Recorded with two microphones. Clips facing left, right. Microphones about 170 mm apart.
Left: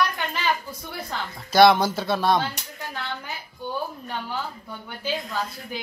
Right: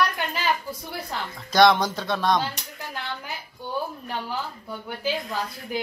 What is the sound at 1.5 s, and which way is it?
Speech, 5° left (ahead or behind).